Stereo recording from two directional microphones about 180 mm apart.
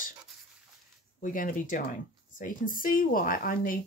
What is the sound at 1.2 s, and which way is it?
Speech, 50° left (ahead or behind).